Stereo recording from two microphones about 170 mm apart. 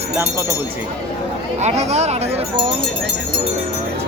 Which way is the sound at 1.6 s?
40° right (ahead or behind).